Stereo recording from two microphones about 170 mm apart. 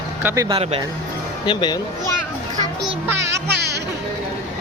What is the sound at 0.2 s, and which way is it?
Speech, 15° right (ahead or behind).